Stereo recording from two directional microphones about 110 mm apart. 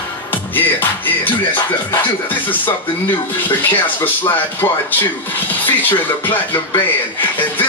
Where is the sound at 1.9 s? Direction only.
15° left (ahead or behind).